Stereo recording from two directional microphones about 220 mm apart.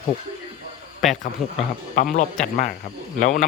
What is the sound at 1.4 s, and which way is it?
Speech, centre (ahead or behind).